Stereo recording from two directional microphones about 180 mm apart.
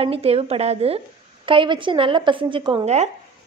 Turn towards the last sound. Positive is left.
turn(degrees=-40)  # may be behind; listen again after turning